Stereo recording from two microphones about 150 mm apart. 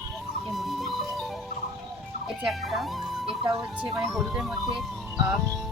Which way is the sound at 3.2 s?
35° right (ahead or behind).